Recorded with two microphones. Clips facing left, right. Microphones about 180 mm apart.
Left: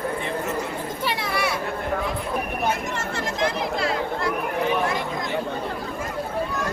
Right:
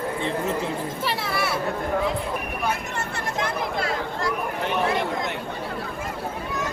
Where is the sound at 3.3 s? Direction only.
50° right (ahead or behind).